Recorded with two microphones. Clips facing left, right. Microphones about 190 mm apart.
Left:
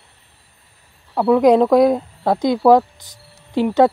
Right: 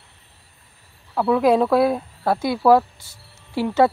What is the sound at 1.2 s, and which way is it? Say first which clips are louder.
Speech: left 4 dB; 15° left (ahead or behind).